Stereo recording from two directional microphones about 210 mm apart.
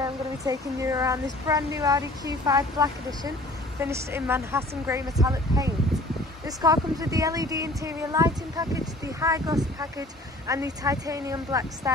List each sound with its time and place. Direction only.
0.0 s speech: 15° right (ahead or behind)